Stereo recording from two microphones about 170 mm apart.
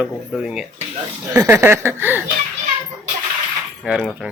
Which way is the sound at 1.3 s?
15° right (ahead or behind).